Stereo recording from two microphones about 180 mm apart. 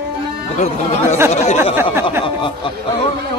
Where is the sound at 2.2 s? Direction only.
30° left (ahead or behind).